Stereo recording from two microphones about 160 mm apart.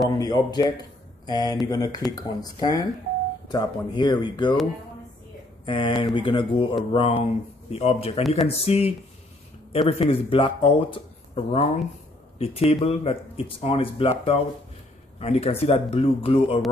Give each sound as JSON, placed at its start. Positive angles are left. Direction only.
{"t": 0.1, "sound": "speech", "side_deg": 25}
{"t": 5.7, "sound": "speech", "side_deg": 30}